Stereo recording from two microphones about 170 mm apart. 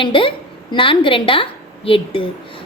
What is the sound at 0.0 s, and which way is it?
A woman's voice, 30° left (ahead or behind).